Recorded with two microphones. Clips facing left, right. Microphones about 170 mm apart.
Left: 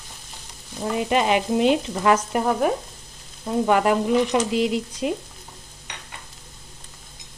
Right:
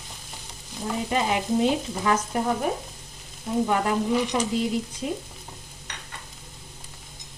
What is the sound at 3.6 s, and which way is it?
Frying, 75° left (ahead or behind).